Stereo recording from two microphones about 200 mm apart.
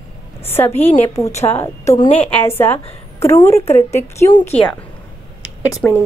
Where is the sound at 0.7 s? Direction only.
30° left (ahead or behind).